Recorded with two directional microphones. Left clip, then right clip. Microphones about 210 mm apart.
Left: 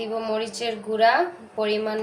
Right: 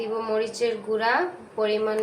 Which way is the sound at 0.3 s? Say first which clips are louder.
Right 2 dB; 35° left (ahead or behind).